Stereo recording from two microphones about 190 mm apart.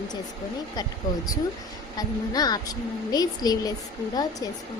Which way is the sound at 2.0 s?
20° left (ahead or behind).